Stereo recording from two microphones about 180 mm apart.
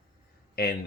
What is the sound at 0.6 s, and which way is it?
Speech, 60° left (ahead or behind).